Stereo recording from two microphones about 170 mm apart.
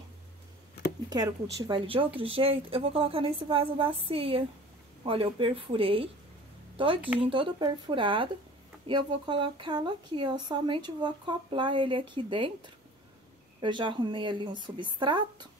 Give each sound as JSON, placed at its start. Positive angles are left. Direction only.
{"t": 1.1, "sound": "a woman's voice", "side_deg": -25}
{"t": 7.2, "sound": "speech", "side_deg": -30}